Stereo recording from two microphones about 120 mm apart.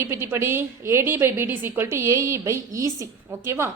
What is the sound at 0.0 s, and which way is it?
A woman's voice, 20° right (ahead or behind).